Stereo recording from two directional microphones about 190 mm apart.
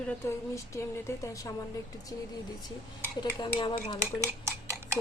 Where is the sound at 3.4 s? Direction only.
25° left (ahead or behind).